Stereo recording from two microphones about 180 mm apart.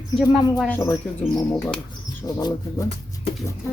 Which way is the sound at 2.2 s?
20° left (ahead or behind).